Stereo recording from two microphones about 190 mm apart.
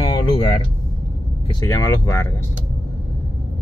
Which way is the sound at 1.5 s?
20° left (ahead or behind).